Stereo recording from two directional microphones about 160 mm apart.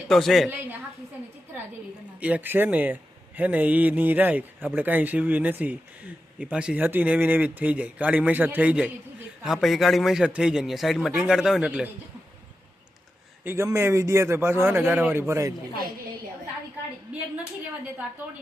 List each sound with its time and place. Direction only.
0.1 s a man's voice: centre (ahead or behind)
2.2 s a man's voice: 10° right (ahead or behind)
13.4 s speech: 15° right (ahead or behind)